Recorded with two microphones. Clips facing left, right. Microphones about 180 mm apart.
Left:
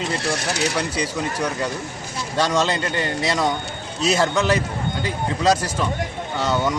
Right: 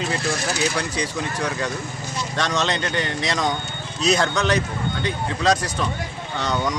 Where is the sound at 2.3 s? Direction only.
5° left (ahead or behind).